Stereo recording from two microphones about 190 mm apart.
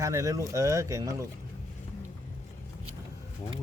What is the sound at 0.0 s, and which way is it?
Speech, 15° right (ahead or behind).